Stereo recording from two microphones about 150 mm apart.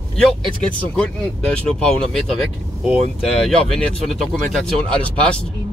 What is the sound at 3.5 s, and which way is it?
Speech, 5° left (ahead or behind).